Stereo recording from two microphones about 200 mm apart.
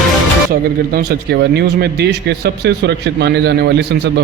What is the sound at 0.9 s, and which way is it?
A man's voice, 50° right (ahead or behind).